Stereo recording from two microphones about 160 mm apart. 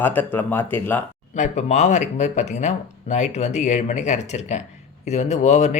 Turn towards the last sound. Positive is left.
turn(degrees=45)  # may be behind; listen again after turning